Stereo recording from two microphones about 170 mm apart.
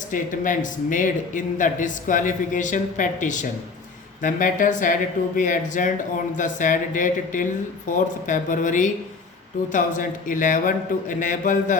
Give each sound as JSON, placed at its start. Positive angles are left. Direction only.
{"t": 0.1, "sound": "a man's voice", "side_deg": 50}